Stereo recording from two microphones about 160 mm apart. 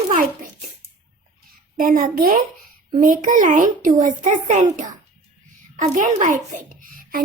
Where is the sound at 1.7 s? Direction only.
60° right (ahead or behind).